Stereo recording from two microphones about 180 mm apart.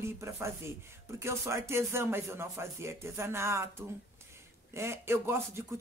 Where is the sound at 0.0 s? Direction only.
15° right (ahead or behind).